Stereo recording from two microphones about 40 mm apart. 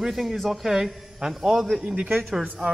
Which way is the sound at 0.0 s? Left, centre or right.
Centre.